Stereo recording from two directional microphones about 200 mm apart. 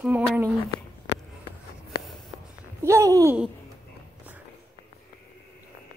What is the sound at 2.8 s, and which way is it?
Speech, 15° right (ahead or behind).